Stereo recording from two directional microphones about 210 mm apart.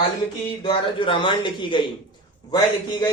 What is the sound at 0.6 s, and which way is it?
A man's voice, 25° left (ahead or behind).